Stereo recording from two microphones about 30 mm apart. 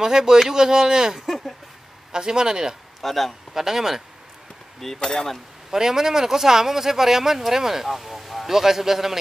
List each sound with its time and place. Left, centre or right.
0.0 s speech: right
3.0 s a man's voice: centre
3.5 s speech: centre
4.9 s speech: centre
5.7 s speech: centre